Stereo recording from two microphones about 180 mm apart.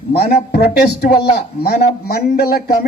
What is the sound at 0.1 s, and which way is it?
Speech, 60° left (ahead or behind).